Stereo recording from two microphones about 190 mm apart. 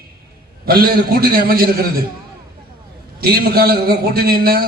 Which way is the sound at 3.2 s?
55° right (ahead or behind).